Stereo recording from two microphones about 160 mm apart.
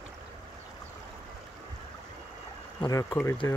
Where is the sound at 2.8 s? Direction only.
20° left (ahead or behind).